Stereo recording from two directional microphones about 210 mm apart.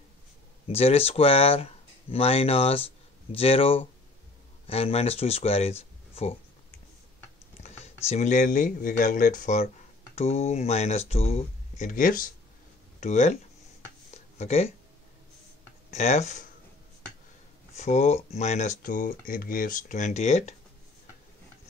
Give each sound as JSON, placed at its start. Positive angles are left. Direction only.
{"t": 0.7, "sound": "speech", "side_deg": 30}
{"t": 7.6, "sound": "speech", "side_deg": 30}
{"t": 14.1, "sound": "a sound", "side_deg": 30}
{"t": 15.9, "sound": "speech", "side_deg": 30}
{"t": 17.7, "sound": "speech", "side_deg": 30}